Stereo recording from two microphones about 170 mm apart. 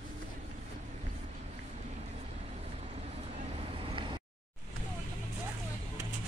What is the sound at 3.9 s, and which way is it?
Vehicle, 30° right (ahead or behind).